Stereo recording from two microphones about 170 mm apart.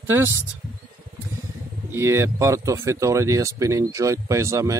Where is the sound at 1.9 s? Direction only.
15° right (ahead or behind).